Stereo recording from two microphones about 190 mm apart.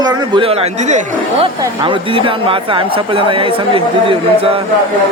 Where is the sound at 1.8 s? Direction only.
25° right (ahead or behind).